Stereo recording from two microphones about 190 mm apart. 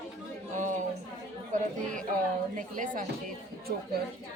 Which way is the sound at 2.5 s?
45° right (ahead or behind).